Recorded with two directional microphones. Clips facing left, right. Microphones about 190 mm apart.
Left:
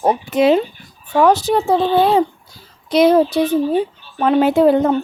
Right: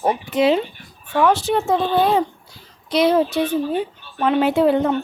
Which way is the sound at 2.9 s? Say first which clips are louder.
Left 4 dB; 45° left (ahead or behind).